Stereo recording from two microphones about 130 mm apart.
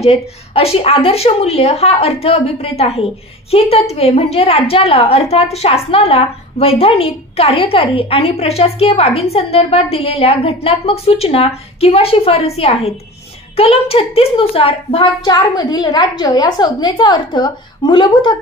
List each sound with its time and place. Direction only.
0.0 s a woman's voice: 50° left (ahead or behind)
15.2 s a woman's voice: 30° left (ahead or behind)